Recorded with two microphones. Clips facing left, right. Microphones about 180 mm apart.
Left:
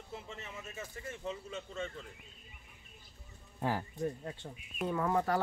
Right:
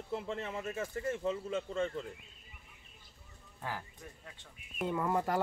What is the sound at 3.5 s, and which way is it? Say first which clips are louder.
Speech: left 8 dB; 30° left (ahead or behind).